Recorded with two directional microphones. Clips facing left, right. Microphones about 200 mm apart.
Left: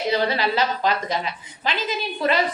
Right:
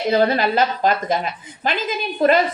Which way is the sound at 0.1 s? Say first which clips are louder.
Right 6 dB; 50° right (ahead or behind).